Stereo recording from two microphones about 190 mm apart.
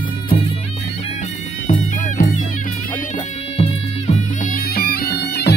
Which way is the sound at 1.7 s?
45° left (ahead or behind).